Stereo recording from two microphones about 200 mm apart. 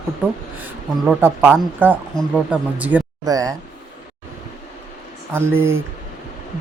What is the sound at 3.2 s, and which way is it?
Speech, 15° right (ahead or behind).